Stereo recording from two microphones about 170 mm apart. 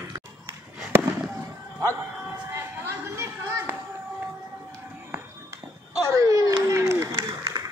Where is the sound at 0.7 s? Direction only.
5° right (ahead or behind).